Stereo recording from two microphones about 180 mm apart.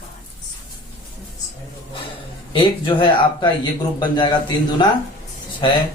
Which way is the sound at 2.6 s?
25° left (ahead or behind).